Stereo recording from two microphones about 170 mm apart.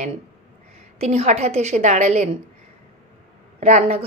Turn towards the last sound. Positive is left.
turn(degrees=-40)  # may be behind; listen again after turning